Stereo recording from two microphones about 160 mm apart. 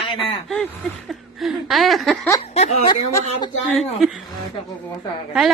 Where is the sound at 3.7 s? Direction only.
Centre (ahead or behind).